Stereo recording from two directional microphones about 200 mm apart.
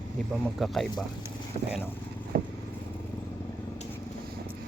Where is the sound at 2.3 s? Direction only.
50° right (ahead or behind).